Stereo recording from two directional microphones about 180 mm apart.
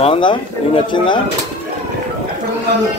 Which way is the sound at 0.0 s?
30° left (ahead or behind).